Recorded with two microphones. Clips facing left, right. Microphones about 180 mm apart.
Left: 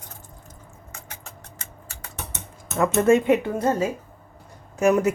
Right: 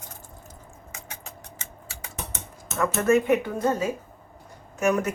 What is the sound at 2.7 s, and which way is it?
Speech, 25° left (ahead or behind).